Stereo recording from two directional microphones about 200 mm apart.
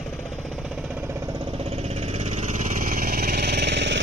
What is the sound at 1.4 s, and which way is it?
Vehicle, 30° right (ahead or behind).